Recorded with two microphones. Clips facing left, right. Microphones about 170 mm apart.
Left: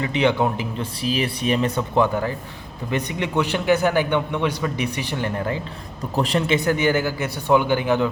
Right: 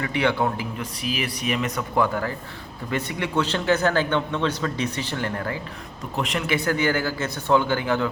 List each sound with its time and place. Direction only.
0.0 s a man's voice: 20° left (ahead or behind)
6.1 s speech: 35° left (ahead or behind)
6.6 s speech: 20° left (ahead or behind)